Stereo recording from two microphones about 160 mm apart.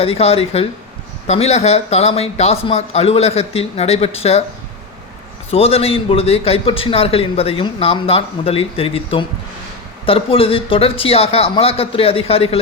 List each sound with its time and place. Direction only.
0.0 s a man's voice: 40° left (ahead or behind)
5.5 s a man's voice: 40° left (ahead or behind)